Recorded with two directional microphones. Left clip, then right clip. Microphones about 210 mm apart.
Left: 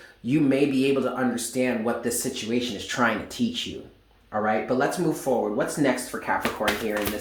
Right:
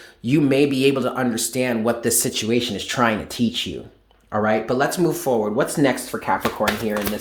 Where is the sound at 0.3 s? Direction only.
45° right (ahead or behind).